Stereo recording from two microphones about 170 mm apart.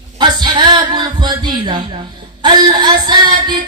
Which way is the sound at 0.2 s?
25° right (ahead or behind).